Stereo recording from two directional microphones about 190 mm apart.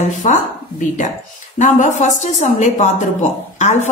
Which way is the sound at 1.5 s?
40° left (ahead or behind).